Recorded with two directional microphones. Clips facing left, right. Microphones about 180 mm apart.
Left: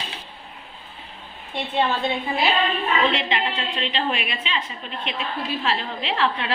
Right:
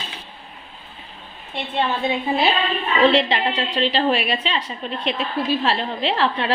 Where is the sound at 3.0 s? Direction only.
35° right (ahead or behind).